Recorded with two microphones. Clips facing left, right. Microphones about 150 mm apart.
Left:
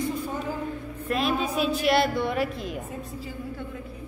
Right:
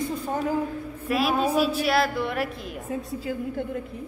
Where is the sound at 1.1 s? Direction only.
5° right (ahead or behind).